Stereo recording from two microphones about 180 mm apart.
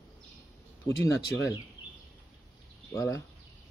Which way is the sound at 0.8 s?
20° left (ahead or behind).